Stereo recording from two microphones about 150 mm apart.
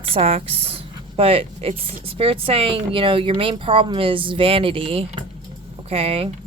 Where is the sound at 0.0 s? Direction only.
40° right (ahead or behind).